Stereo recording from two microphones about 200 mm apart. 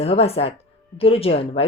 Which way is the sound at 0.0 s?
30° left (ahead or behind).